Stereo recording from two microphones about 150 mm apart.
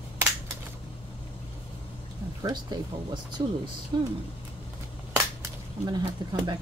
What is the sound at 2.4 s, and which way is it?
Speech, 25° right (ahead or behind).